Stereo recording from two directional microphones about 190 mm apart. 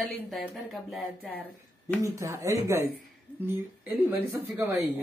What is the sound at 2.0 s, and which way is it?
Speech, 15° right (ahead or behind).